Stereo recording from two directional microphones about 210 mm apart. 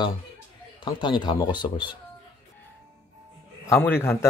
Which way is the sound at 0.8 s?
20° left (ahead or behind).